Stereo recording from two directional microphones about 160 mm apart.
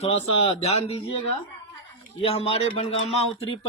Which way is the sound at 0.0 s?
40° left (ahead or behind).